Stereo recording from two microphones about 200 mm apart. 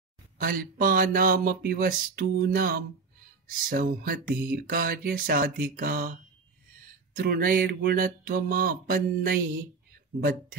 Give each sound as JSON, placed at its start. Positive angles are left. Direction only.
{"t": 0.4, "sound": "speech", "side_deg": -45}